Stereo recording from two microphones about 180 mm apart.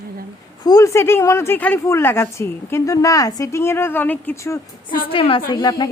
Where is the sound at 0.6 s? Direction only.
20° left (ahead or behind).